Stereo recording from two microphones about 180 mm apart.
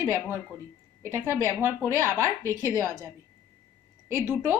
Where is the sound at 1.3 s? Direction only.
15° left (ahead or behind).